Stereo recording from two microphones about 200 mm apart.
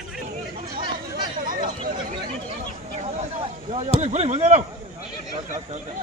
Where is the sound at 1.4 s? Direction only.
40° right (ahead or behind).